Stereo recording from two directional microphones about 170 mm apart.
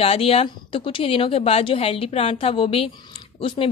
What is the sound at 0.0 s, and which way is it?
Speech, 35° left (ahead or behind).